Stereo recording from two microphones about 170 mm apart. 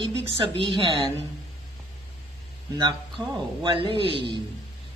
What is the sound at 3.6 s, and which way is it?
Speech, 30° right (ahead or behind).